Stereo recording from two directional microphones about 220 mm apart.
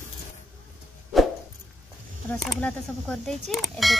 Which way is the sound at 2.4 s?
Centre (ahead or behind).